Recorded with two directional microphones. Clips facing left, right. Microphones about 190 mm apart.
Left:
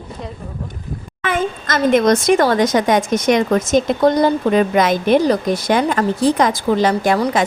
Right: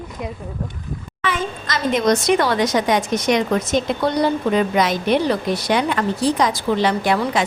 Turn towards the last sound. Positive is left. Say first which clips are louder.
# left 3 dB
turn(degrees=45)  # may be behind; listen again after turning